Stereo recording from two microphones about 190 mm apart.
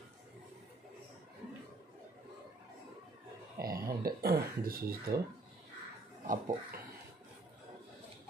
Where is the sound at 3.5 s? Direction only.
55° right (ahead or behind).